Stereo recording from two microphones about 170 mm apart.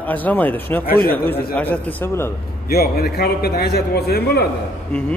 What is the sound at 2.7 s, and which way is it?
A man's voice, 65° left (ahead or behind).